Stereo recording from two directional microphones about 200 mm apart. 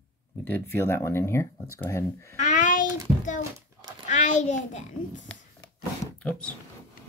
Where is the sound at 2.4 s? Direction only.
40° left (ahead or behind).